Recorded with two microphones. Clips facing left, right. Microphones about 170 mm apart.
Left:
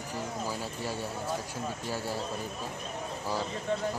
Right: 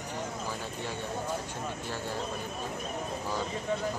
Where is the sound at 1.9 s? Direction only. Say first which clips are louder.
Left 3 dB; 10° left (ahead or behind).